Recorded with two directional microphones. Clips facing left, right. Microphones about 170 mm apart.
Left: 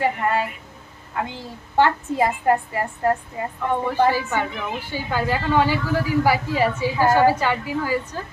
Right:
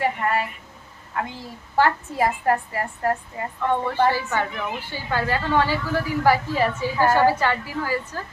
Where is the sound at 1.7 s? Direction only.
20° left (ahead or behind).